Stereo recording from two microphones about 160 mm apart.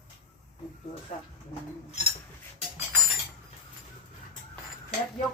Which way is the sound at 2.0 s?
40° left (ahead or behind).